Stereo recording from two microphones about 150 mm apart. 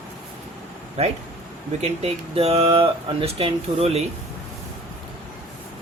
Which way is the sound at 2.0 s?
40° right (ahead or behind).